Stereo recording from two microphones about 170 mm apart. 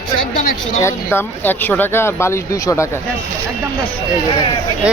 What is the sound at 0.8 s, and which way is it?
Speech, 15° left (ahead or behind).